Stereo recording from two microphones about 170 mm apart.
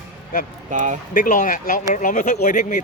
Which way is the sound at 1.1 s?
50° left (ahead or behind).